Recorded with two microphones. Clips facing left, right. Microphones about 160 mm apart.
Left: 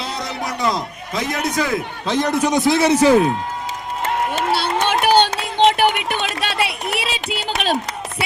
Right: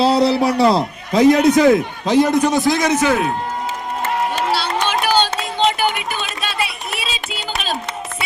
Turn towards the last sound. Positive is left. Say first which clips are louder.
# left 4 dB
turn(degrees=65)  # may be behind; listen again after turning